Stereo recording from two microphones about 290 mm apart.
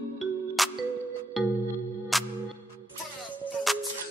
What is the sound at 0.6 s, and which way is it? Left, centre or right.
Music, centre.